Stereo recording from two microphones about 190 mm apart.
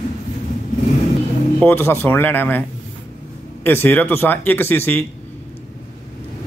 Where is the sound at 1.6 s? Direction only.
10° left (ahead or behind).